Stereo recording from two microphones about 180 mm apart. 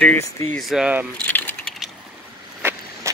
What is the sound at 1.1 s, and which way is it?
Keys jangling, 5° left (ahead or behind).